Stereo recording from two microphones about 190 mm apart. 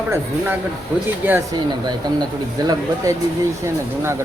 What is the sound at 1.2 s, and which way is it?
Speech, 10° right (ahead or behind).